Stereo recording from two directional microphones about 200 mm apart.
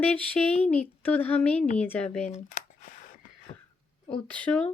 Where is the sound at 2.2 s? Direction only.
35° left (ahead or behind).